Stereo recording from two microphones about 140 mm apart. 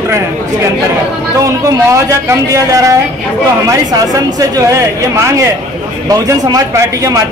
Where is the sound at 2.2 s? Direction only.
25° right (ahead or behind).